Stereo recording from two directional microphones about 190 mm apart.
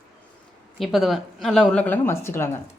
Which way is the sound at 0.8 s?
Centre (ahead or behind).